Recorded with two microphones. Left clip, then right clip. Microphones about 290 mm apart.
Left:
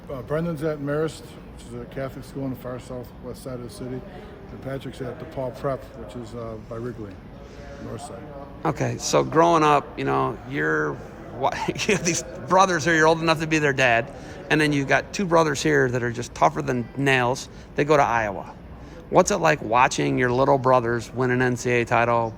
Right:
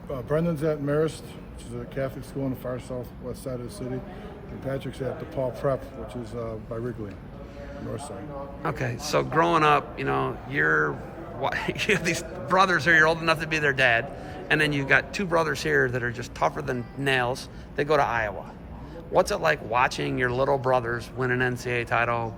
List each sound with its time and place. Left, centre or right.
0.1 s a man's voice: centre
8.6 s a man's voice: centre